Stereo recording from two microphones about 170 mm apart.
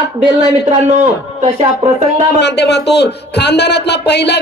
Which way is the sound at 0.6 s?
45° right (ahead or behind).